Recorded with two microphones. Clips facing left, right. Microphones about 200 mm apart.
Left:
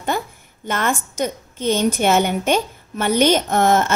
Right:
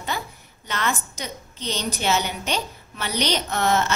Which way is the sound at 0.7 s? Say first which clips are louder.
Left 5 dB; 50° left (ahead or behind).